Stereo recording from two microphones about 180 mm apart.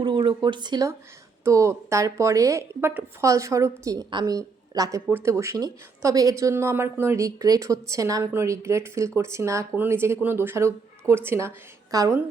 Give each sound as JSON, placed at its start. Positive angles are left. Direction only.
{"t": 0.0, "sound": "a woman's voice", "side_deg": -25}